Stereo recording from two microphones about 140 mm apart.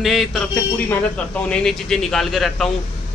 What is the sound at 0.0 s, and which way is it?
A man's voice, centre (ahead or behind).